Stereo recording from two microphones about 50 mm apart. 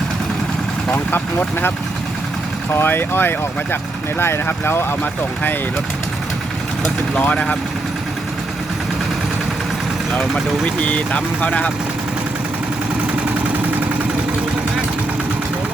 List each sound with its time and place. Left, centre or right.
2.7 s speech: left
7.2 s speech: left
10.8 s speech: left